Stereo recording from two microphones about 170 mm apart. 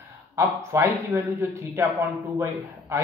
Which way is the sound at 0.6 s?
15° right (ahead or behind).